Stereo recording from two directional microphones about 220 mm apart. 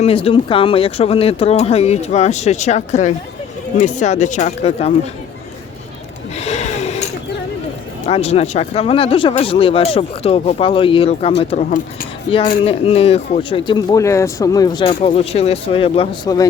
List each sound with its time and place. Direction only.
0.0 s speech: 25° left (ahead or behind)
6.4 s gasp: 30° left (ahead or behind)
8.0 s speech: 30° left (ahead or behind)
12.6 s speech: 25° left (ahead or behind)